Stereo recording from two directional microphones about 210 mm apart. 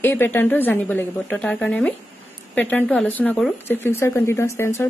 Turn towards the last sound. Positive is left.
turn(degrees=10)  # may be behind; listen again after turning